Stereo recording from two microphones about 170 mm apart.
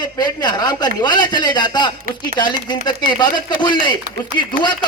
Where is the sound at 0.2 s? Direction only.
25° left (ahead or behind).